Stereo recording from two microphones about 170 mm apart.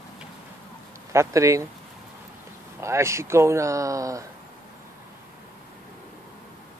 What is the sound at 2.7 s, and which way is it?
Speech, 15° right (ahead or behind).